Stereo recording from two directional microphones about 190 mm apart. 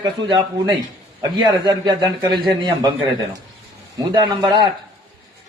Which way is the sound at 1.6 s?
20° right (ahead or behind).